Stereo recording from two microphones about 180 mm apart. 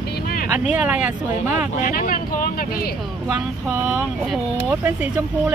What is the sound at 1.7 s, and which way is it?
Speech, 50° left (ahead or behind).